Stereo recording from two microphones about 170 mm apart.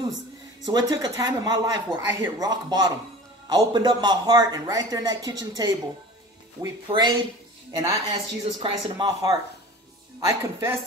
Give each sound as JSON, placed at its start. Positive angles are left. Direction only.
{"t": 0.7, "sound": "a woman's voice", "side_deg": -20}